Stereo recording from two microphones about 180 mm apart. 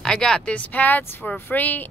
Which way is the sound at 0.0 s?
5° left (ahead or behind).